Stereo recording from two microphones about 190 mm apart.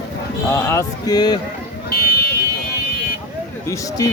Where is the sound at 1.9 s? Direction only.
50° left (ahead or behind).